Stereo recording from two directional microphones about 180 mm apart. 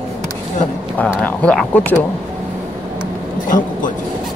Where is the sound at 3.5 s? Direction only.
50° left (ahead or behind).